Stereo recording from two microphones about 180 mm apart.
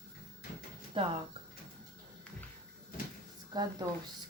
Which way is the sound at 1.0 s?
30° right (ahead or behind).